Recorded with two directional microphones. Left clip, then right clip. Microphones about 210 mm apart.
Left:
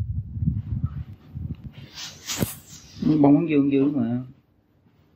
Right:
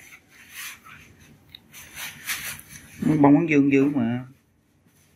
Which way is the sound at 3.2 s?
5° right (ahead or behind).